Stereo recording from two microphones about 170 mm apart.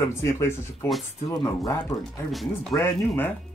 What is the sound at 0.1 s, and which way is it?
Speech, 15° left (ahead or behind).